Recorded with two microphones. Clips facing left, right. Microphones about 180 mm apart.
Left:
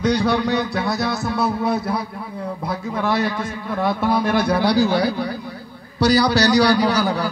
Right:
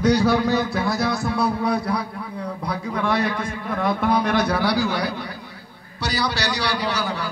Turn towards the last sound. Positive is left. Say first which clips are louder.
# left 6 dB
turn(degrees=40)  # may be behind; listen again after turning